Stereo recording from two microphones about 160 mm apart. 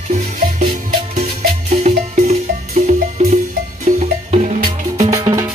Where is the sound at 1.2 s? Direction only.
45° right (ahead or behind).